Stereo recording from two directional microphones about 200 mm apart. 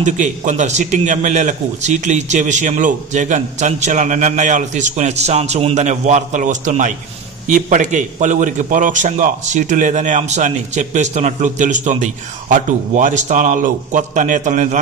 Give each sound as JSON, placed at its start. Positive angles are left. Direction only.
{"t": 0.0, "sound": "a man's voice", "side_deg": -40}